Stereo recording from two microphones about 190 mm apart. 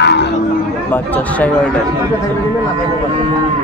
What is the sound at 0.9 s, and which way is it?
Speech, 10° left (ahead or behind).